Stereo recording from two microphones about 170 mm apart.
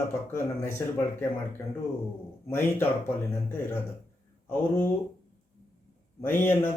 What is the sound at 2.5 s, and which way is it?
Speech, 15° left (ahead or behind).